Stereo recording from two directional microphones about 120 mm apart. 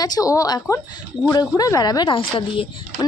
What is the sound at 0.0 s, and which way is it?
A woman's voice, 30° left (ahead or behind).